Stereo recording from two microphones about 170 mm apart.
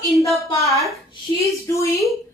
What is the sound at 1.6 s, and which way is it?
Speech, 15° left (ahead or behind).